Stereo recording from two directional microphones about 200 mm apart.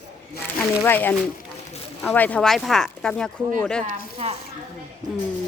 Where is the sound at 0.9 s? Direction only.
10° left (ahead or behind).